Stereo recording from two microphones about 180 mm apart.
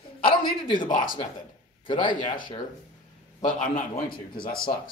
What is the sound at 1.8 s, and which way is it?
Speech, 30° left (ahead or behind).